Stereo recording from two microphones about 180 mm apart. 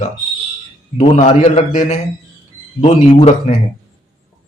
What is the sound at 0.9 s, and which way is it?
A man's voice, 35° left (ahead or behind).